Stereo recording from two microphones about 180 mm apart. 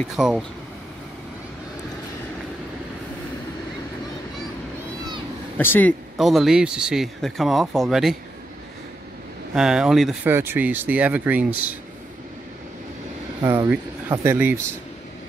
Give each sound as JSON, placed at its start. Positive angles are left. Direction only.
{"t": 0.0, "sound": "speech", "side_deg": 0}
{"t": 5.6, "sound": "speech", "side_deg": 10}
{"t": 6.1, "sound": "speech", "side_deg": 0}
{"t": 9.6, "sound": "speech", "side_deg": -5}
{"t": 10.3, "sound": "speech", "side_deg": -10}
{"t": 13.4, "sound": "speech", "side_deg": -15}